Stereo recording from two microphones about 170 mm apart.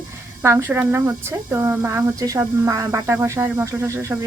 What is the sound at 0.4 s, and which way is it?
Speech, 15° right (ahead or behind).